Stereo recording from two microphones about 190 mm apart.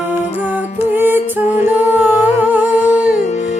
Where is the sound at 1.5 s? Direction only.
40° left (ahead or behind).